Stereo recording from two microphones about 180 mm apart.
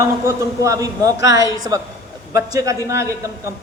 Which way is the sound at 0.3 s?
15° right (ahead or behind).